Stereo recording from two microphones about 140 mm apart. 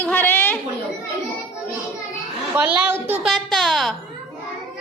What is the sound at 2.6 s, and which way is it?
Speech, 10° right (ahead or behind).